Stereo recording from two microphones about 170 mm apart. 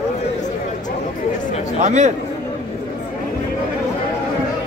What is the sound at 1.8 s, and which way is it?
Speech, 45° right (ahead or behind).